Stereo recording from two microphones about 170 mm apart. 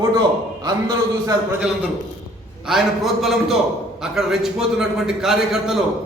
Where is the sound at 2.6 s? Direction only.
Centre (ahead or behind).